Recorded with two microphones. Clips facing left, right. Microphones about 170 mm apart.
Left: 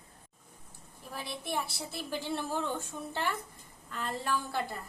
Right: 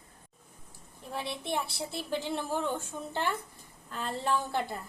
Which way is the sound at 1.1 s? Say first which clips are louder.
Right 3 dB; 25° right (ahead or behind).